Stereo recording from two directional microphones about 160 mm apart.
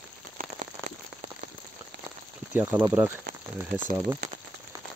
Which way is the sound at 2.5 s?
10° right (ahead or behind).